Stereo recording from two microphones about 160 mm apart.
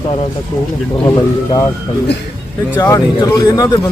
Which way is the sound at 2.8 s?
20° left (ahead or behind).